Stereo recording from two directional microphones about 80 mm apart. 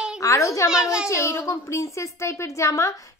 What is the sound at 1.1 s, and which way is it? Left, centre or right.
Speech, left.